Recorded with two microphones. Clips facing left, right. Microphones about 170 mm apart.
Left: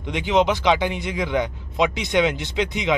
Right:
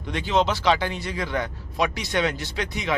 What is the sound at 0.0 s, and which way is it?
Speech, 20° left (ahead or behind).